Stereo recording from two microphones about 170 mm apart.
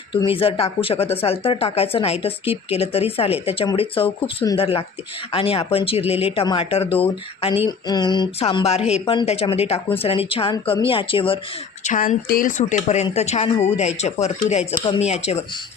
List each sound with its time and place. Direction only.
0.1 s speech: 30° left (ahead or behind)
7.9 s speech: 25° left (ahead or behind)
11.8 s speech: 50° left (ahead or behind)